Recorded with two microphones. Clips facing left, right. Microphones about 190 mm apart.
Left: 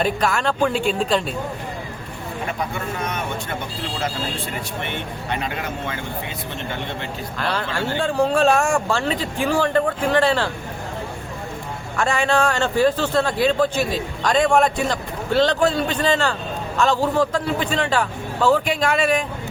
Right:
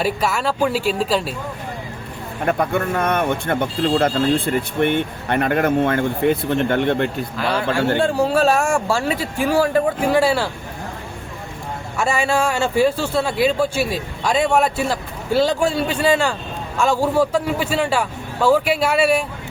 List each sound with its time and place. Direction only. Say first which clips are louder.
0.0 s speech: even; 5° right (ahead or behind)
2.5 s speech: right 10 dB; 55° right (ahead or behind)
7.3 s a man's voice: right 4 dB; 10° right (ahead or behind)
11.9 s a man's voice: even; 5° right (ahead or behind)